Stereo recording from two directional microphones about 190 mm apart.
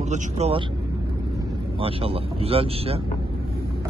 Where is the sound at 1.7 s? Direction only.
30° right (ahead or behind).